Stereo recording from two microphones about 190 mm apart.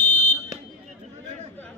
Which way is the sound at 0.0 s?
40° left (ahead or behind).